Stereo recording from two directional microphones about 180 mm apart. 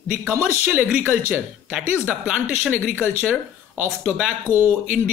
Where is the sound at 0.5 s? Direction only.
10° right (ahead or behind).